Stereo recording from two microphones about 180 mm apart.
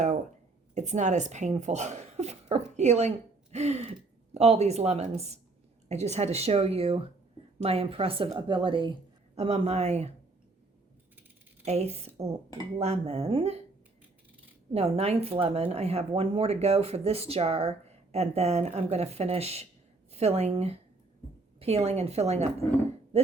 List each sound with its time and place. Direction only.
0.7 s a woman's voice: 40° right (ahead or behind)
11.6 s a woman's voice: 35° right (ahead or behind)
14.7 s a woman's voice: 35° right (ahead or behind)